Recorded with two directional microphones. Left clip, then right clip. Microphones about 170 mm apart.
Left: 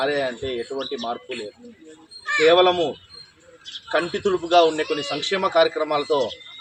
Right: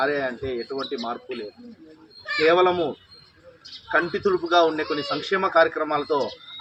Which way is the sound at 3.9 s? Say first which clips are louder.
Even; 25° left (ahead or behind).